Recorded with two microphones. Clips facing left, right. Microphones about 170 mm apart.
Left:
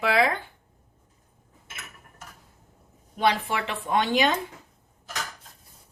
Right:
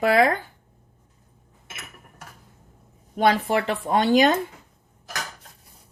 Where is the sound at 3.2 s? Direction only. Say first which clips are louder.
Right 4 dB; 45° right (ahead or behind).